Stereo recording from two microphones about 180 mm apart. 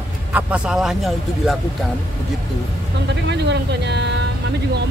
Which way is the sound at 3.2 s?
70° right (ahead or behind).